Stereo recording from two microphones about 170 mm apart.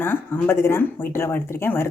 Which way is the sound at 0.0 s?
10° left (ahead or behind).